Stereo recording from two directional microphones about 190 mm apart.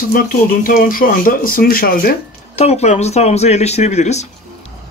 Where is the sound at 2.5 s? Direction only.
35° left (ahead or behind).